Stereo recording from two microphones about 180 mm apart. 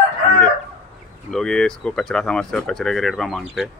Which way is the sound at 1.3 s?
5° left (ahead or behind).